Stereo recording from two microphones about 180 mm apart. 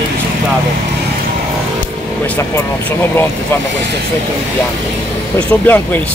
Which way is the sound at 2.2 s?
10° left (ahead or behind).